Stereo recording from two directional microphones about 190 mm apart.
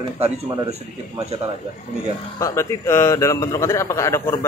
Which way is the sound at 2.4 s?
15° left (ahead or behind).